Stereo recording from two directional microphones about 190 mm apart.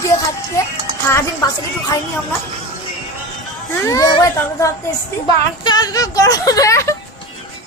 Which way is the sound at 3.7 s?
15° left (ahead or behind).